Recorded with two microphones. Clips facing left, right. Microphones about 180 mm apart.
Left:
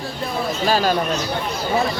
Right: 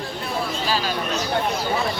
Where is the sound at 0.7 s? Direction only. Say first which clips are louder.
Left 8 dB; 45° left (ahead or behind).